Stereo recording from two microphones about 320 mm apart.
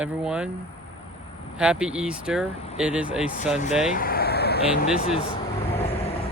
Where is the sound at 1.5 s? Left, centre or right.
Centre.